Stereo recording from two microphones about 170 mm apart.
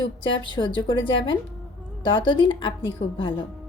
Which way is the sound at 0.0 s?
30° left (ahead or behind).